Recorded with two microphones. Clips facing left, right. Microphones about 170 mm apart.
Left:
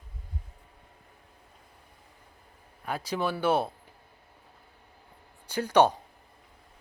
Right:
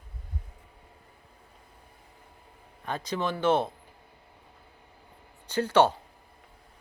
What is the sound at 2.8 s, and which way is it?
Speech, 10° left (ahead or behind).